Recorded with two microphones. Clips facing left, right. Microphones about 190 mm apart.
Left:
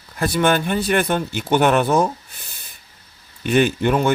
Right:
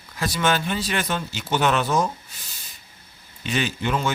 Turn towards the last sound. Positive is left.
turn(degrees=55)  # may be behind; listen again after turning